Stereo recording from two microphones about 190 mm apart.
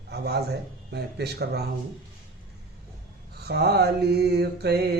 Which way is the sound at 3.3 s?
55° right (ahead or behind).